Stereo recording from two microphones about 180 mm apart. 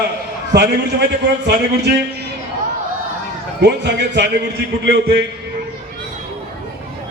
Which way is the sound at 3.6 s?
75° right (ahead or behind).